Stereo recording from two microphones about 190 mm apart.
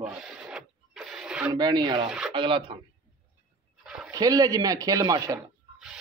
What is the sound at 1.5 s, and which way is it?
Speech, 20° right (ahead or behind).